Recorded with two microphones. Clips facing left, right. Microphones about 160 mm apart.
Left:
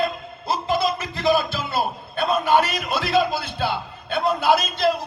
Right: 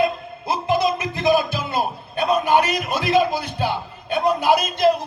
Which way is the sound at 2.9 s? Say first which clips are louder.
Right 2 dB; 15° right (ahead or behind).